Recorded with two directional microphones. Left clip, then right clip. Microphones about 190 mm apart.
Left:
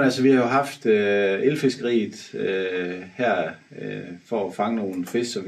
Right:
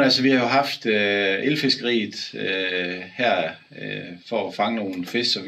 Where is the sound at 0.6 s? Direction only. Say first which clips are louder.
Even; 20° left (ahead or behind).